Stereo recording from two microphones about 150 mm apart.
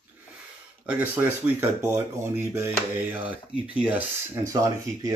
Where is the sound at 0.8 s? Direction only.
10° right (ahead or behind).